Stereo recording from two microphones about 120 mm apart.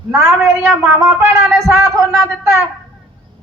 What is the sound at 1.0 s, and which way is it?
Speech, 20° right (ahead or behind).